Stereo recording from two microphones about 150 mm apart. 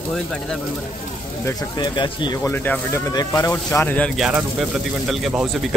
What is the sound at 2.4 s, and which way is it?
Speech, 10° left (ahead or behind).